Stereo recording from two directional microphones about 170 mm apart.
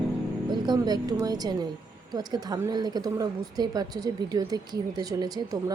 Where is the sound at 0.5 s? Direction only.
25° right (ahead or behind).